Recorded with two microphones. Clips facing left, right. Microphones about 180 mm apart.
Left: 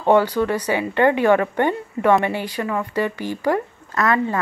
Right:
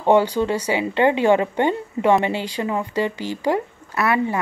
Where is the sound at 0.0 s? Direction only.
15° right (ahead or behind).